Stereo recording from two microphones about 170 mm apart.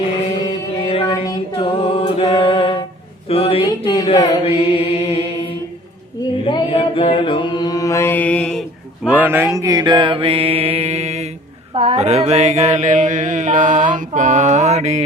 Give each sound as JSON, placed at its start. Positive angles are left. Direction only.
{"t": 1.5, "sound": "a sound", "side_deg": 35}
{"t": 3.2, "sound": "mantra", "side_deg": 35}
{"t": 9.0, "sound": "mantra", "side_deg": -10}